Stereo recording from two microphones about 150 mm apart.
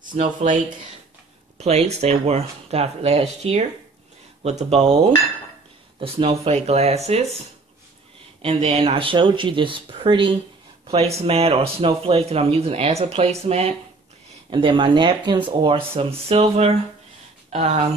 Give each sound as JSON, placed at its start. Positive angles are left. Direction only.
{"t": 0.2, "sound": "speech", "side_deg": -50}
{"t": 1.6, "sound": "speech", "side_deg": -45}
{"t": 5.9, "sound": "speech", "side_deg": -40}
{"t": 8.4, "sound": "speech", "side_deg": -40}